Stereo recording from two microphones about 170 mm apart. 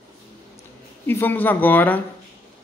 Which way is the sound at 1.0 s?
10° left (ahead or behind).